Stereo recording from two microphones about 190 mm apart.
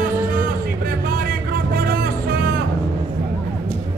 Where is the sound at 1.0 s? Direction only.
50° right (ahead or behind).